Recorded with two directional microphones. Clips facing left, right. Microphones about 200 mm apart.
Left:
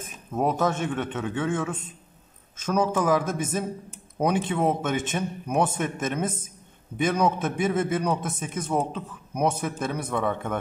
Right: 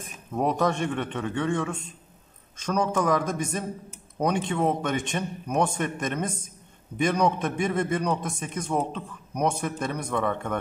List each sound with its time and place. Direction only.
0.0 s a man's voice: 5° left (ahead or behind)